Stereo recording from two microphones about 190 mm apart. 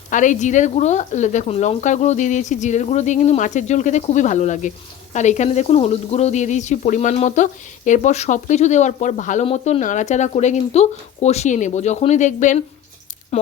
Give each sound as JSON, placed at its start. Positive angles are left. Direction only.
{"t": 0.1, "sound": "speech", "side_deg": 40}